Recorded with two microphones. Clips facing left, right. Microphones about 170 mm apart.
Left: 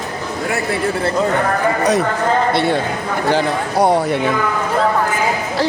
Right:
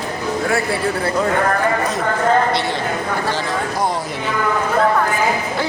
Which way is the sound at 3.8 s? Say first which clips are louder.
Left 11 dB; 65° left (ahead or behind).